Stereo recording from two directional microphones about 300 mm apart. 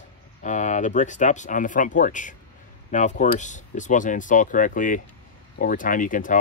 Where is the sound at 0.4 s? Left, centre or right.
Left.